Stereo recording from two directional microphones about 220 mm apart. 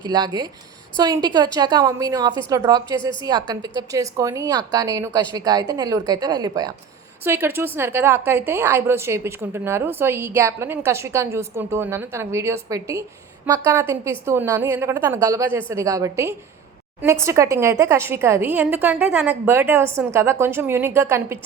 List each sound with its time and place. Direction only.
0.0 s a woman's voice: 20° right (ahead or behind)